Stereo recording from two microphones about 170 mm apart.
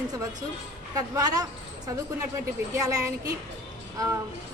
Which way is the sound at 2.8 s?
20° right (ahead or behind).